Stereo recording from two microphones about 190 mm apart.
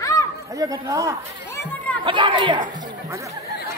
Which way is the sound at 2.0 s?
25° right (ahead or behind).